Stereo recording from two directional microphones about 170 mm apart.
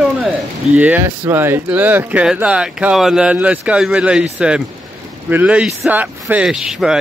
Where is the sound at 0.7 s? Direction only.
10° right (ahead or behind).